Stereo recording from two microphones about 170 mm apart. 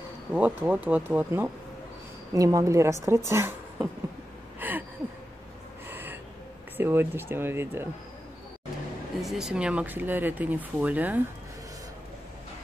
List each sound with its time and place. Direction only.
0.3 s a woman's voice: 10° right (ahead or behind)
4.6 s a sound: 10° right (ahead or behind)
5.9 s gasp: 10° right (ahead or behind)
6.8 s speech: 15° right (ahead or behind)
9.2 s speech: centre (ahead or behind)